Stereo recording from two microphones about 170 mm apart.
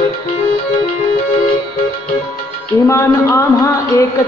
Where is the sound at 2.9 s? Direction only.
15° left (ahead or behind).